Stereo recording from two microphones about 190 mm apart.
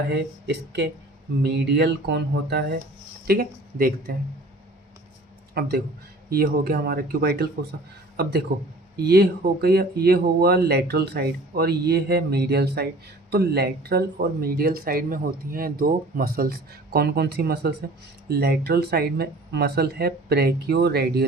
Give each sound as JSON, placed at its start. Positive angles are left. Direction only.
{"t": 0.1, "sound": "speech", "side_deg": -60}
{"t": 3.2, "sound": "speech", "side_deg": -50}
{"t": 5.6, "sound": "speech", "side_deg": -55}